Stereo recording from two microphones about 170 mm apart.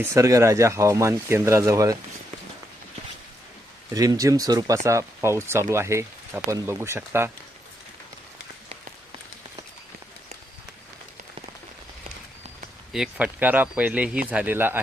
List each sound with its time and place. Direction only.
0.0 s speech: 15° right (ahead or behind)
3.9 s speech: 20° right (ahead or behind)
12.9 s speech: 5° right (ahead or behind)